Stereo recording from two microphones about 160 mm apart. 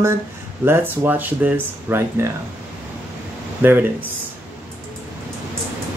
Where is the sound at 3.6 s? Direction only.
15° right (ahead or behind).